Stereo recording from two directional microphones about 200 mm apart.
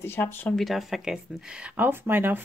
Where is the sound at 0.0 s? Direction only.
10° left (ahead or behind).